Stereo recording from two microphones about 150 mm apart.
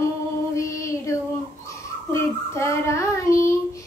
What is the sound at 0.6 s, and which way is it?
Child singing, 20° left (ahead or behind).